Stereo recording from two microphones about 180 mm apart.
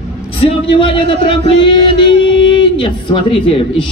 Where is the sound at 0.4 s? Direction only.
30° left (ahead or behind).